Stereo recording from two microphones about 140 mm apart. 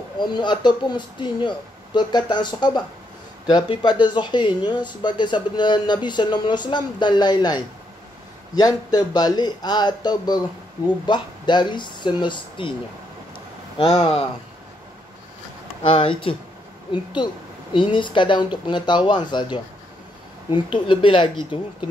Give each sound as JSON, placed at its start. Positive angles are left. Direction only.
{"t": 0.2, "sound": "speech", "side_deg": 30}
{"t": 13.7, "sound": "speech", "side_deg": 40}
{"t": 15.9, "sound": "speech", "side_deg": 40}
{"t": 20.4, "sound": "speech", "side_deg": 35}